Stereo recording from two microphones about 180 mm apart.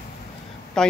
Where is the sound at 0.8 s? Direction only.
5° left (ahead or behind).